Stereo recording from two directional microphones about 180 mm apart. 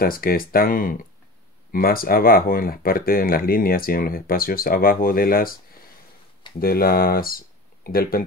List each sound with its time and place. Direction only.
0.0 s speech: 55° left (ahead or behind)
6.6 s speech: 55° left (ahead or behind)